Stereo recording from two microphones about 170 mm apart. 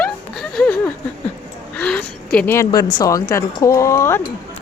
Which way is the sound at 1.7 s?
5° left (ahead or behind).